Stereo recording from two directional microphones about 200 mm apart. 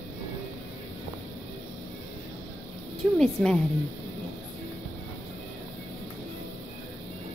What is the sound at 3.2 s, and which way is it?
Speech, centre (ahead or behind).